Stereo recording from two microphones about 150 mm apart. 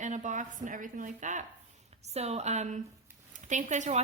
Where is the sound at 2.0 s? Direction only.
45° right (ahead or behind).